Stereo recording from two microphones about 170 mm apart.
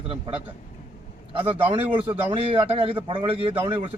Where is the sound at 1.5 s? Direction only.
30° right (ahead or behind).